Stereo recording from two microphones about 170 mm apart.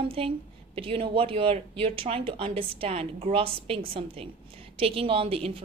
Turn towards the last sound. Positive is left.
turn(degrees=-35)  # may be behind; listen again after turning